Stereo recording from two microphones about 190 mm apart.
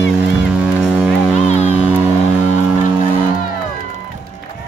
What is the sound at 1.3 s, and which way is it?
Music, 35° left (ahead or behind).